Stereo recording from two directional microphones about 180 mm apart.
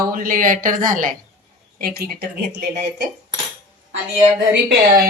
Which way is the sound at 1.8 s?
60° right (ahead or behind).